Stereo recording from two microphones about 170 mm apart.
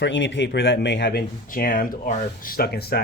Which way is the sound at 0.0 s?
90° left.